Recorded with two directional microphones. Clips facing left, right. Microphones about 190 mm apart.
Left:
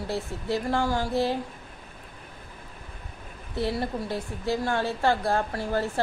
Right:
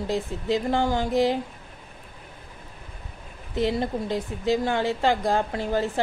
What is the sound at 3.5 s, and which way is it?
A woman's voice, 20° right (ahead or behind).